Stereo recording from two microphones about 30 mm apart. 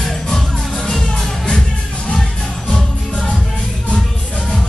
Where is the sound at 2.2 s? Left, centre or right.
Centre.